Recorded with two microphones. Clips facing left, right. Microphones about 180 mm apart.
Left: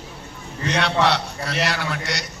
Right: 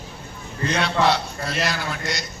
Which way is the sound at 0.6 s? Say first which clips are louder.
Even; 75° left (ahead or behind).